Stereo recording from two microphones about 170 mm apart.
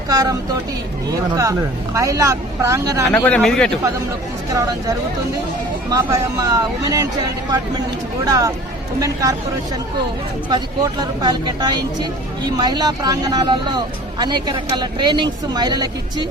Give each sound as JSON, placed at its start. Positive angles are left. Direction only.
{"t": 0.1, "sound": "speech", "side_deg": -20}
{"t": 1.4, "sound": "speech", "side_deg": -20}
{"t": 3.1, "sound": "speech", "side_deg": 10}
{"t": 5.9, "sound": "speech", "side_deg": -20}
{"t": 8.2, "sound": "speech", "side_deg": -20}
{"t": 10.5, "sound": "speech", "side_deg": -25}